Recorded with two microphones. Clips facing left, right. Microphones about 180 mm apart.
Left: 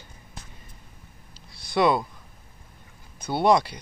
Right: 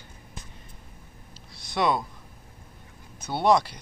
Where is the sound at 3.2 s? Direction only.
Centre (ahead or behind).